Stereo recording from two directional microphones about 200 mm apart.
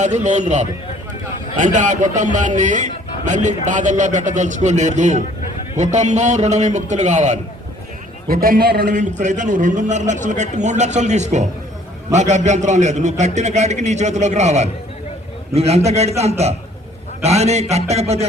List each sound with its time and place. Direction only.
0.0 s a man's voice: 35° right (ahead or behind)